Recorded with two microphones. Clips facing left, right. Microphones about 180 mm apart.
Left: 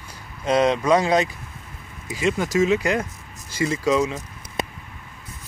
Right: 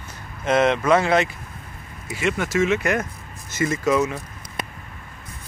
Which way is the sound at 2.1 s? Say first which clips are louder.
Left 1 dB; 40° left (ahead or behind).